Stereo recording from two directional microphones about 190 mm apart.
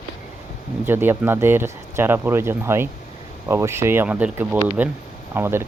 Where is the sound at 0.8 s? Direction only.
10° right (ahead or behind).